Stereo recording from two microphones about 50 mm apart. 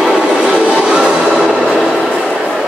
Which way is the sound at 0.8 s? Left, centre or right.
Centre.